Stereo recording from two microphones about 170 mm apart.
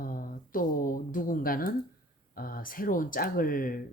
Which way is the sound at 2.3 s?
55° left (ahead or behind).